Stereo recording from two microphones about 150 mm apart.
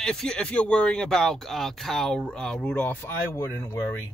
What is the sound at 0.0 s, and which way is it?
Speech, 5° left (ahead or behind).